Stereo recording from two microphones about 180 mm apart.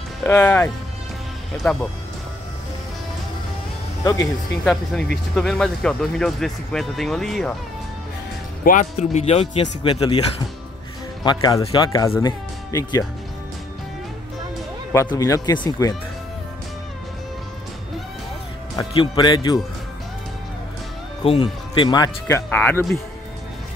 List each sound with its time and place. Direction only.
0.2 s speech: 10° left (ahead or behind)
4.0 s speech: 20° left (ahead or behind)
5.1 s speech: 5° left (ahead or behind)
8.6 s speech: 45° left (ahead or behind)
9.9 s speech: 25° left (ahead or behind)
11.2 s speech: 20° left (ahead or behind)
15.1 s speech: 20° left (ahead or behind)
18.8 s speech: 25° left (ahead or behind)
21.2 s speech: 30° left (ahead or behind)
22.5 s speech: 10° left (ahead or behind)